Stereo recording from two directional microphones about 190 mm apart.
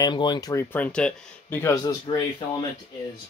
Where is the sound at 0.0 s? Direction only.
25° left (ahead or behind).